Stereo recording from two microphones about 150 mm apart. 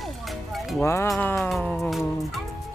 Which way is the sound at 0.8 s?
15° left (ahead or behind).